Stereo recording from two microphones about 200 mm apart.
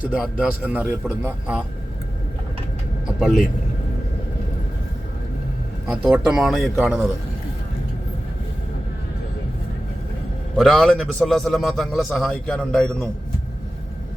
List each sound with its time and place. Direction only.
0.2 s a man's voice: 5° right (ahead or behind)
3.2 s a man's voice: 5° right (ahead or behind)
5.9 s a man's voice: 5° right (ahead or behind)
6.7 s a man's voice: 10° right (ahead or behind)
10.6 s a man's voice: centre (ahead or behind)